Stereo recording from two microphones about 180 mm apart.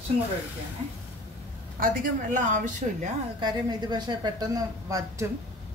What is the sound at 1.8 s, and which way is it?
Speech, 50° right (ahead or behind).